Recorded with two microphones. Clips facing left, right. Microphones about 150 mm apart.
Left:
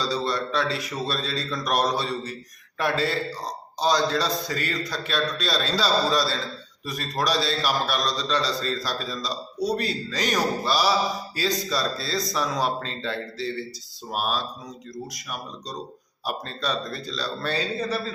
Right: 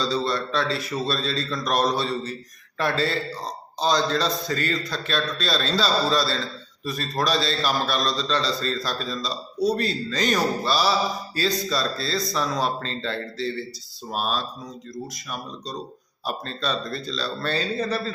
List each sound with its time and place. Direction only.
0.0 s a man's voice: 10° left (ahead or behind)
16.2 s a man's voice: 15° left (ahead or behind)
17.7 s speech: 5° left (ahead or behind)